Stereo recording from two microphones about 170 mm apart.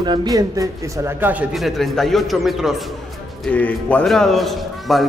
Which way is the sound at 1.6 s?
Centre (ahead or behind).